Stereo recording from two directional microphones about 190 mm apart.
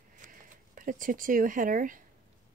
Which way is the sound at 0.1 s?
45° right (ahead or behind).